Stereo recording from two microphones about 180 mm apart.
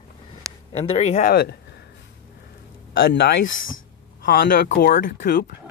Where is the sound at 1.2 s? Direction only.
60° left (ahead or behind).